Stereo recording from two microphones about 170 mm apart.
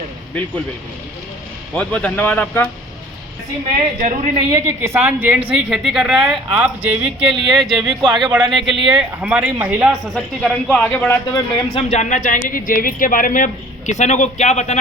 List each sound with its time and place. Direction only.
1.7 s speech: 5° left (ahead or behind)
4.4 s a woman's voice: 20° right (ahead or behind); by 11.1 s 5° left (ahead or behind)
11.1 s speech: 20° left (ahead or behind)
11.7 s speech: 40° left (ahead or behind)